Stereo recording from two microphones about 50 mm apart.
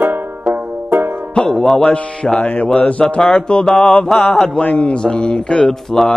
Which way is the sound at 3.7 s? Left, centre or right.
Centre.